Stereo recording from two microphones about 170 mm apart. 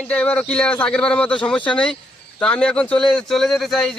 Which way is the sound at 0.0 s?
5° left (ahead or behind).